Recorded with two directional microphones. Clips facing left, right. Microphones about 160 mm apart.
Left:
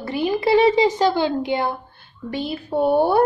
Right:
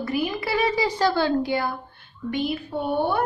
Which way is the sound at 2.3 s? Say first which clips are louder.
Left 3 dB; 35° left (ahead or behind).